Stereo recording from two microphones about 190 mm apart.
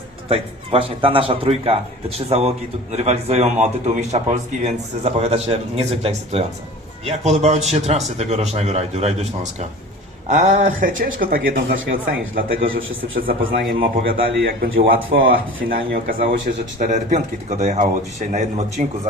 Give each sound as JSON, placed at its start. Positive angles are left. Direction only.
{"t": 0.3, "sound": "a man's voice", "side_deg": -30}
{"t": 12.5, "sound": "a man's voice", "side_deg": -90}
{"t": 13.2, "sound": "speech", "side_deg": -55}
{"t": 14.3, "sound": "a man's voice", "side_deg": -65}
{"t": 14.8, "sound": "a man's voice", "side_deg": -50}